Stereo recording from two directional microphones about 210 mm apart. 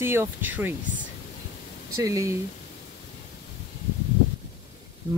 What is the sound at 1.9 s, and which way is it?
Speech, 15° right (ahead or behind).